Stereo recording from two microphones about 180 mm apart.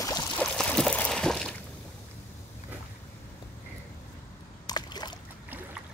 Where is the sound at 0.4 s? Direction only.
5° left (ahead or behind).